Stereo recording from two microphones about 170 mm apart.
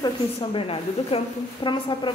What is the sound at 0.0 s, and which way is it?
A woman's voice, 30° left (ahead or behind).